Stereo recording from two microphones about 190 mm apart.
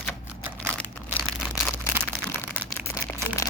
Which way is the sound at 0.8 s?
5° left (ahead or behind).